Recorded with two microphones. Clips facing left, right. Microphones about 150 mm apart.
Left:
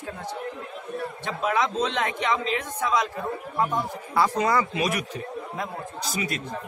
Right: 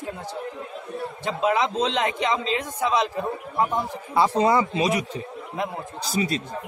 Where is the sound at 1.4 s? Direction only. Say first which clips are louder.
Right 2 dB; 25° right (ahead or behind).